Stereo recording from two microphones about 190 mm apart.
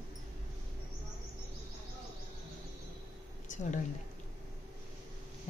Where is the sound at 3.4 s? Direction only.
40° left (ahead or behind).